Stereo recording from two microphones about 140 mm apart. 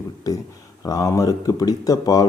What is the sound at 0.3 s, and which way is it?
Speech, 25° left (ahead or behind).